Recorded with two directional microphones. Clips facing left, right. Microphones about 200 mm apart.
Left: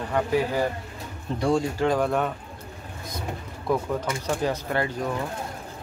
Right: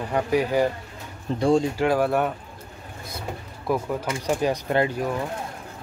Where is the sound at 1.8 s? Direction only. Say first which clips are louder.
Right 2 dB; 5° right (ahead or behind).